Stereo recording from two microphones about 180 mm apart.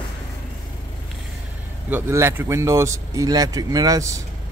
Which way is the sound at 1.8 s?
10° right (ahead or behind).